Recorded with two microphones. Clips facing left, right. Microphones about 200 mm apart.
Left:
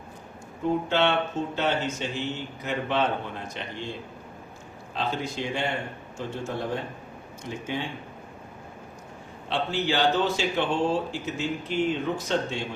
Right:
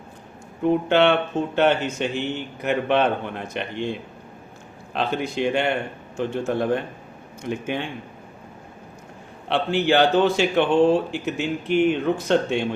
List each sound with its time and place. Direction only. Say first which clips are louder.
0.6 s speech: right 6 dB; 65° right (ahead or behind)
4.9 s speech: right 6 dB; 65° right (ahead or behind)
9.5 s speech: right 7 dB; 60° right (ahead or behind)